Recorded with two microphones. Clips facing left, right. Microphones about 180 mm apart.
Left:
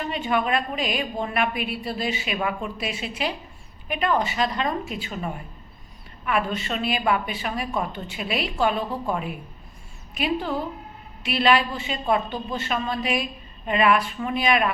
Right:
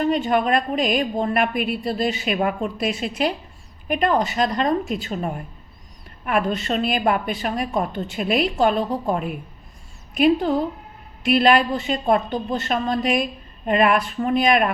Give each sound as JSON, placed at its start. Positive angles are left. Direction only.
{"t": 0.1, "sound": "a woman's voice", "side_deg": -45}